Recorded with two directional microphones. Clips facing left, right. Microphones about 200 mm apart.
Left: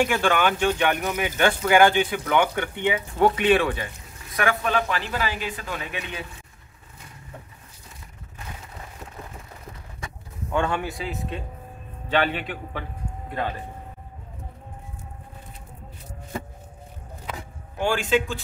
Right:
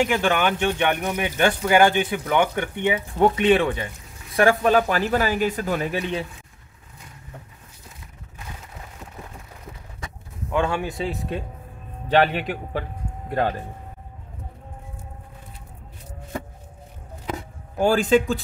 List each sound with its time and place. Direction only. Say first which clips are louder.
0.1 s speech: right 1 dB; 15° right (ahead or behind)
4.4 s a man's voice: right 6 dB; 35° right (ahead or behind)
10.5 s speech: right 2 dB; centre (ahead or behind)
10.8 s speech: right 3 dB; 20° right (ahead or behind)
12.1 s a man's voice: right 4 dB; 40° right (ahead or behind)
17.3 s a sound: right 6 dB; 40° right (ahead or behind)